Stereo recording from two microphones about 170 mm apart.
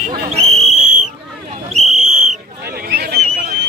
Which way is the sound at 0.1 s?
40° right (ahead or behind).